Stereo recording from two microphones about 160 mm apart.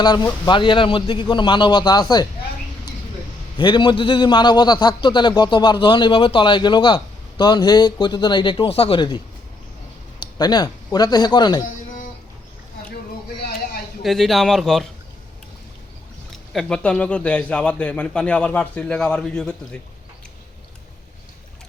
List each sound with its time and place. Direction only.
0.0 s a man's voice: 25° left (ahead or behind)
3.6 s a man's voice: 30° left (ahead or behind)
14.0 s speech: centre (ahead or behind)
16.3 s a man's voice: centre (ahead or behind)